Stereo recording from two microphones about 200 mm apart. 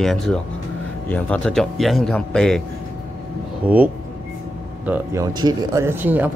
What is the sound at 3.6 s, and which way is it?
Speech, 5° right (ahead or behind).